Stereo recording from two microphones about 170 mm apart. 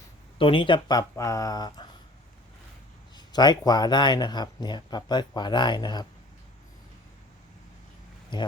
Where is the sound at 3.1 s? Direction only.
25° left (ahead or behind).